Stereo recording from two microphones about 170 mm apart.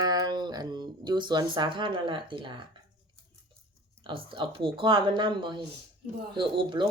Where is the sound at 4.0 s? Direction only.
30° right (ahead or behind).